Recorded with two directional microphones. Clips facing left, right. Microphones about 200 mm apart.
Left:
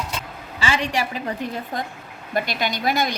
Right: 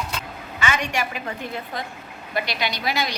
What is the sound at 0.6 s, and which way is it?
A woman's voice, 30° left (ahead or behind).